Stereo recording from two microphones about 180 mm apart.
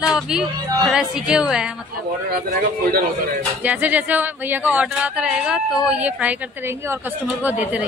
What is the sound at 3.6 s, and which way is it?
Speech, 10° right (ahead or behind).